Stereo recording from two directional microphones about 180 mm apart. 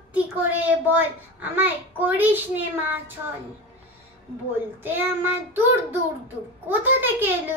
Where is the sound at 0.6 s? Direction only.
10° right (ahead or behind).